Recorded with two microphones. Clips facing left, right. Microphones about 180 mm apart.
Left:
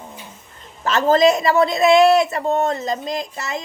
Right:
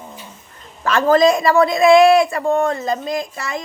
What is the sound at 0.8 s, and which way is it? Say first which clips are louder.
Speech: right 1 dB; 25° left (ahead or behind).